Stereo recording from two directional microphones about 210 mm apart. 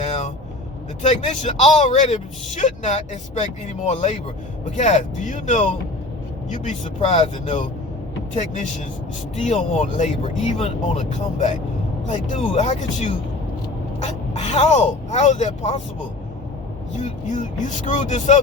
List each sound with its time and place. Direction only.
0.0 s vehicle: 30° left (ahead or behind)
1.0 s speech: 30° left (ahead or behind)
9.4 s speech: 35° left (ahead or behind)
17.0 s speech: 35° left (ahead or behind)